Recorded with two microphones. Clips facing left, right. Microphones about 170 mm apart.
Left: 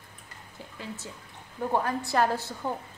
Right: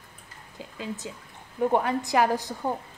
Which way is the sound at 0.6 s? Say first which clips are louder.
Right 5 dB; 15° right (ahead or behind).